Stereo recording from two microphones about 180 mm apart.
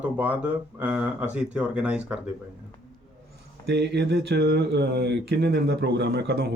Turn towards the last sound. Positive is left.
turn(degrees=-65)  # may be behind; listen again after turning